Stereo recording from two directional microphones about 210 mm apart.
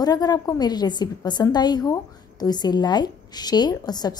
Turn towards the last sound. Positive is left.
turn(degrees=20)  # may be behind; listen again after turning